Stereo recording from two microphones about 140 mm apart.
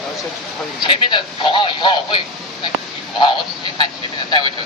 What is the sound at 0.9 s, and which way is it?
Speech, 35° left (ahead or behind).